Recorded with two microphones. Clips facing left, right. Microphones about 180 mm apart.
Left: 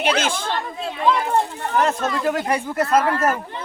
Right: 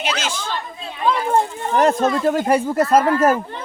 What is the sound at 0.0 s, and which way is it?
Speech, 55° left (ahead or behind).